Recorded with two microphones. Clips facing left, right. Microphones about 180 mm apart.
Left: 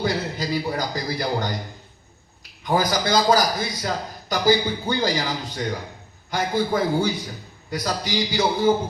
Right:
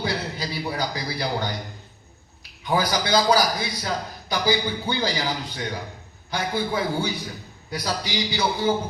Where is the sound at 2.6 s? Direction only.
45° left (ahead or behind).